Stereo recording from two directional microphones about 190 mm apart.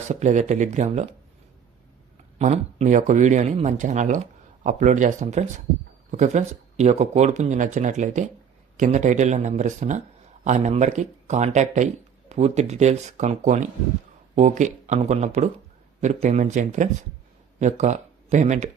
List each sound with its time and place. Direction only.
0.1 s speech: 35° right (ahead or behind)
2.4 s speech: 35° right (ahead or behind)